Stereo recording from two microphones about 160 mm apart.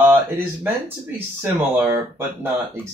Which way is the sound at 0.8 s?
15° right (ahead or behind).